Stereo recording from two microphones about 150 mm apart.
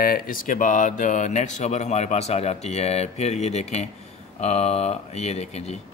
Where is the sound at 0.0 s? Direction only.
75° left (ahead or behind).